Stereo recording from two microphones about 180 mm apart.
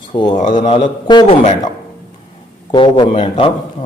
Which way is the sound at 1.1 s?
25° left (ahead or behind).